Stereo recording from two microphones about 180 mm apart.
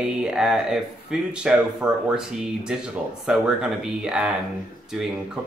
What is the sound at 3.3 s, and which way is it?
Speech, 5° right (ahead or behind).